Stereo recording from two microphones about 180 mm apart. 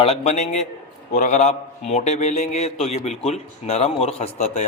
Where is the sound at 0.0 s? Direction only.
35° left (ahead or behind).